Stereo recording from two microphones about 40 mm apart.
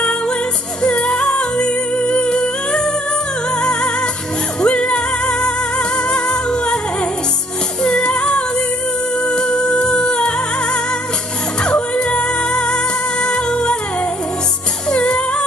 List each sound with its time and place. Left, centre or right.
0.8 s music: left
4.6 s music: centre
7.8 s music: centre
14.9 s music: left